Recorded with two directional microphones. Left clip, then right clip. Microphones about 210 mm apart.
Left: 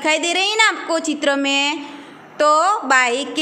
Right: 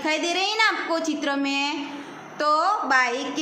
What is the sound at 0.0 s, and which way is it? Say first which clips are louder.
A woman's voice: left 6 dB; 45° left (ahead or behind).